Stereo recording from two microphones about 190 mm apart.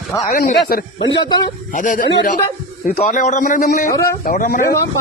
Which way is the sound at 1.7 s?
45° left (ahead or behind).